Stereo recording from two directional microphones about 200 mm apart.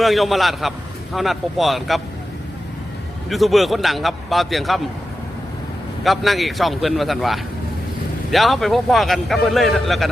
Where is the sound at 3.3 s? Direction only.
Centre (ahead or behind).